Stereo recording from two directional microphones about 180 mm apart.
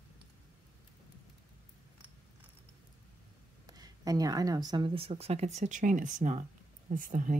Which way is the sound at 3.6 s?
20° right (ahead or behind).